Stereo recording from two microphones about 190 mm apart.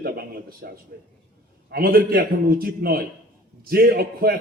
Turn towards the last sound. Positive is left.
turn(degrees=-55)  # may be behind; listen again after turning